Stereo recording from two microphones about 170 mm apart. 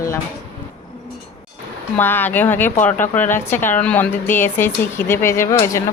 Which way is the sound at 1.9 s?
10° left (ahead or behind).